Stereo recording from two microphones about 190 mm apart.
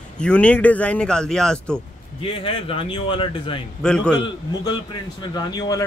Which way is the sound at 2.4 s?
30° left (ahead or behind).